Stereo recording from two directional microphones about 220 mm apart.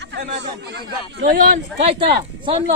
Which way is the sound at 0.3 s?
50° right (ahead or behind).